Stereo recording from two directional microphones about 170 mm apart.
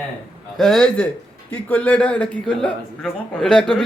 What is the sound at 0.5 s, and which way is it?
A man's voice, centre (ahead or behind).